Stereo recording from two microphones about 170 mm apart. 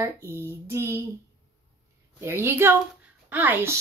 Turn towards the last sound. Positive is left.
turn(degrees=-10)  # may be behind; listen again after turning